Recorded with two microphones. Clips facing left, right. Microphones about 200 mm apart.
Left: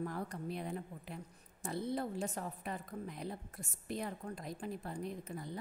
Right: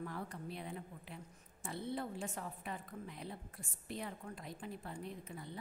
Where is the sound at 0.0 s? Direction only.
40° left (ahead or behind).